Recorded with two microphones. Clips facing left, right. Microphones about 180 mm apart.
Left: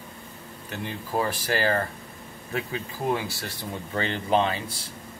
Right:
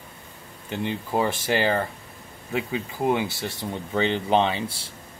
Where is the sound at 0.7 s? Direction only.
25° right (ahead or behind).